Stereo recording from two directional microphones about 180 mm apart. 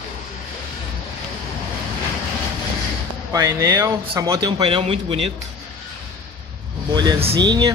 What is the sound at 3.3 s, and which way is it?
Speech, 15° right (ahead or behind).